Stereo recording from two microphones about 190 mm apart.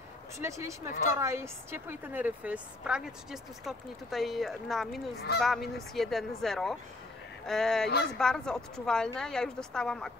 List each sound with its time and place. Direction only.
0.4 s speech: 15° right (ahead or behind)
0.8 s a woman's voice: 40° left (ahead or behind)
1.1 s a woman's voice: 15° right (ahead or behind); by 10.1 s 5° left (ahead or behind)